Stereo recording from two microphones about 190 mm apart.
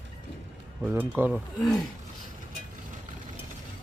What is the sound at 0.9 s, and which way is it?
Speech, 10° right (ahead or behind).